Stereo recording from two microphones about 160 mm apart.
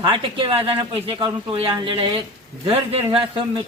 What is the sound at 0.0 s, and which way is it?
A man's voice, 30° right (ahead or behind).